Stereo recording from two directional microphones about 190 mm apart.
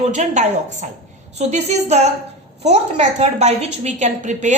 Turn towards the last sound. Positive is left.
turn(degrees=-40)  # may be behind; listen again after turning